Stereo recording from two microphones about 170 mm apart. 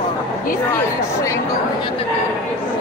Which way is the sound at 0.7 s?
15° left (ahead or behind).